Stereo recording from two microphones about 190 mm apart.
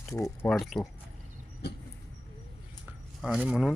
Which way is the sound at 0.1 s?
15° left (ahead or behind).